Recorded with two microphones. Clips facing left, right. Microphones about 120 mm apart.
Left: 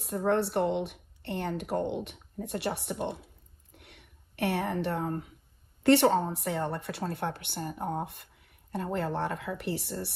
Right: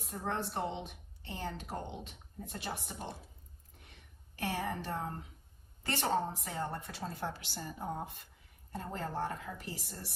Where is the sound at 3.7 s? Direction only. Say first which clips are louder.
Left 6 dB; 70° left (ahead or behind).